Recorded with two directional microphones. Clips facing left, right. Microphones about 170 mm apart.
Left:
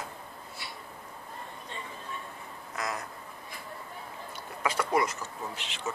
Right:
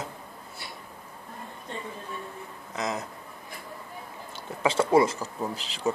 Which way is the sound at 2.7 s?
20° right (ahead or behind).